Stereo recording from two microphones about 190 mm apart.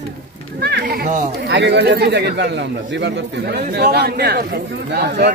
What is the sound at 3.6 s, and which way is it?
Speech, 50° right (ahead or behind).